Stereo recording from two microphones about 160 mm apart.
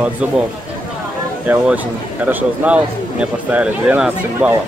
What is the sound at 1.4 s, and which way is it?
A man's voice, 10° right (ahead or behind).